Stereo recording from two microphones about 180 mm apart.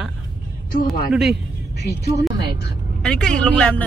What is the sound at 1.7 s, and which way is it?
Speech, 65° left (ahead or behind).